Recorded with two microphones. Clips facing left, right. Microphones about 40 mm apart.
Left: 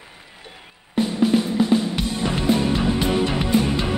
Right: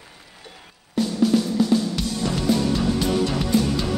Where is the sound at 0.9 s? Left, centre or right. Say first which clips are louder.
Left 1 dB; left.